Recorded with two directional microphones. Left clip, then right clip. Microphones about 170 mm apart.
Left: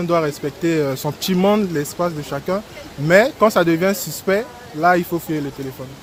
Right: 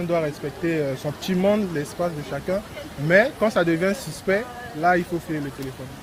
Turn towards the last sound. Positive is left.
turn(degrees=60)  # may be behind; listen again after turning